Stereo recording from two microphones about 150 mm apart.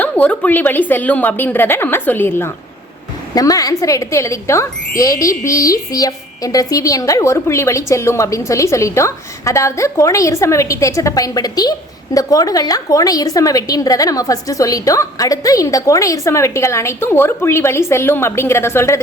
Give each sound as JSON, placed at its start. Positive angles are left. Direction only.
{"t": 0.0, "sound": "speech", "side_deg": 10}